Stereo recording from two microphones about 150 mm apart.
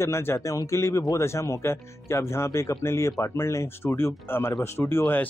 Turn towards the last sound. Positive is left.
turn(degrees=15)  # may be behind; listen again after turning